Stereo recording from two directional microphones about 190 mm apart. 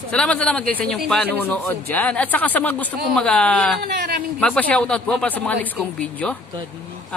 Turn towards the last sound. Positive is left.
turn(degrees=5)  # may be behind; listen again after turning